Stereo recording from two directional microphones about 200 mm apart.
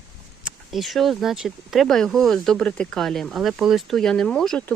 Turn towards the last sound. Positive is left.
turn(degrees=5)  # may be behind; listen again after turning